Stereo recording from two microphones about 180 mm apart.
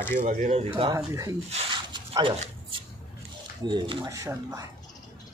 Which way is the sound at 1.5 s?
30° right (ahead or behind).